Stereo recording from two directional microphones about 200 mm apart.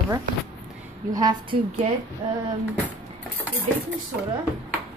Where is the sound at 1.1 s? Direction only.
20° right (ahead or behind).